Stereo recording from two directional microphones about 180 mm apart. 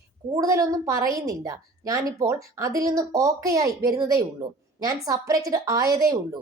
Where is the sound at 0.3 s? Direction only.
20° right (ahead or behind).